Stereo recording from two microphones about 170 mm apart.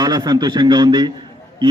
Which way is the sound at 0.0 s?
25° right (ahead or behind).